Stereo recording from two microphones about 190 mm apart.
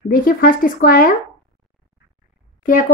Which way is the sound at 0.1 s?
50° left (ahead or behind).